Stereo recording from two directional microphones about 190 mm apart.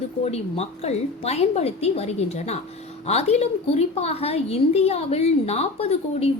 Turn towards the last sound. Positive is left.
turn(degrees=35)  # may be behind; listen again after turning